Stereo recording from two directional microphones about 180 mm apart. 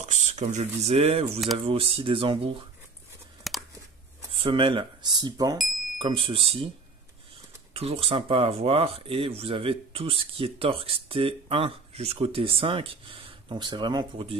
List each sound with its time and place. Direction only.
0.0 s speech: 40° right (ahead or behind)
3.4 s a sound: centre (ahead or behind)
4.3 s speech: 30° right (ahead or behind)
7.7 s speech: 35° right (ahead or behind)